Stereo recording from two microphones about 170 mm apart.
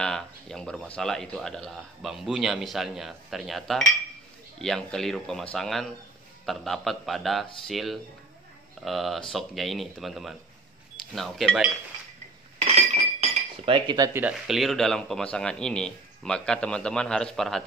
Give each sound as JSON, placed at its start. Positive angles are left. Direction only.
{"t": 0.0, "sound": "speech", "side_deg": 5}
{"t": 12.5, "sound": "cutlery", "side_deg": -35}
{"t": 14.2, "sound": "speech", "side_deg": 0}